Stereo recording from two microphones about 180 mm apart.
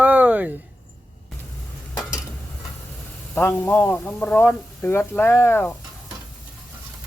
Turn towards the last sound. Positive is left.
turn(degrees=10)  # may be behind; listen again after turning